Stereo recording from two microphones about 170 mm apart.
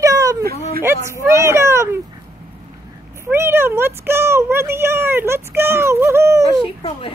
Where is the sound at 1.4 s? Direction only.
15° right (ahead or behind).